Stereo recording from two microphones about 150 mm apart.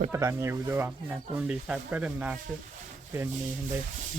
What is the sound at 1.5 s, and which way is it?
Speech, 5° right (ahead or behind).